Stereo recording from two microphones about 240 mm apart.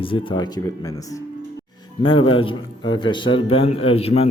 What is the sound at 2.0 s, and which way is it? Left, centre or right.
A man's voice, left.